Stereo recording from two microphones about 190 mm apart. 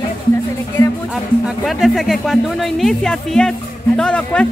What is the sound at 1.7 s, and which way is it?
Speech, centre (ahead or behind).